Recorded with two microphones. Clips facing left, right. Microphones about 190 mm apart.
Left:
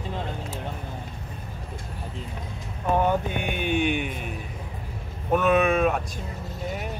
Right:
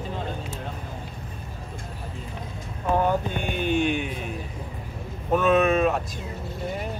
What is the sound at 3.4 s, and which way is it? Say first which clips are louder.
Speech: right 1 dB; 55° left (ahead or behind).